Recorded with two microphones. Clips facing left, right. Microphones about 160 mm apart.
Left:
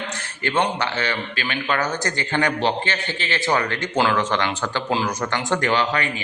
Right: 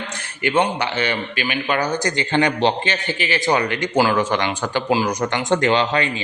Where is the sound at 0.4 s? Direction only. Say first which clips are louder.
Right 3 dB; 10° right (ahead or behind).